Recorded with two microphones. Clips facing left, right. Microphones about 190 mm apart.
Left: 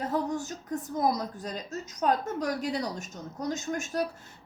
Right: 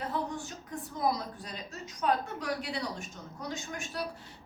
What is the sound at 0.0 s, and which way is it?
A woman's voice, 40° left (ahead or behind).